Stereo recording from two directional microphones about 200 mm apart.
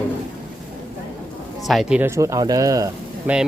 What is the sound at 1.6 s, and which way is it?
Speech, centre (ahead or behind).